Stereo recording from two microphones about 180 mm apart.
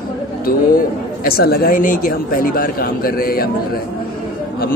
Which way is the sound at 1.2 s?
60° left (ahead or behind).